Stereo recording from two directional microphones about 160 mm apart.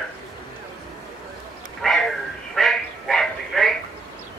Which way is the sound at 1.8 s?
Centre (ahead or behind).